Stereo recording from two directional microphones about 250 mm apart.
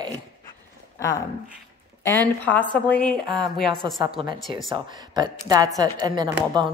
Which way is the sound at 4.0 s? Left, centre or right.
Centre.